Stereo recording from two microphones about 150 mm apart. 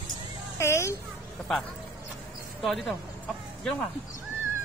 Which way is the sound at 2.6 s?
Centre (ahead or behind).